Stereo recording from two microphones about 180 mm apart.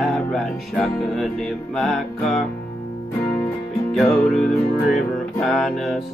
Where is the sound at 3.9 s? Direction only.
Centre (ahead or behind).